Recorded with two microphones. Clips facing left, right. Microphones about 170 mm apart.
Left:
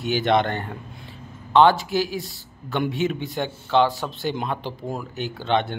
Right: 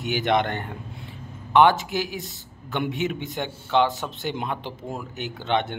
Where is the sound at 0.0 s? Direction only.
15° right (ahead or behind).